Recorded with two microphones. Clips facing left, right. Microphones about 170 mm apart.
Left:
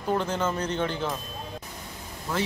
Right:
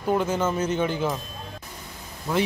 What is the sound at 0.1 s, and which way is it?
Speech, 10° right (ahead or behind).